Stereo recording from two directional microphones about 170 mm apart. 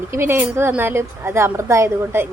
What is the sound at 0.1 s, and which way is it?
Speech, 15° right (ahead or behind).